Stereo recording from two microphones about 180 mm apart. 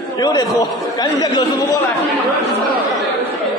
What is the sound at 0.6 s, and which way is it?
Speech, 20° left (ahead or behind).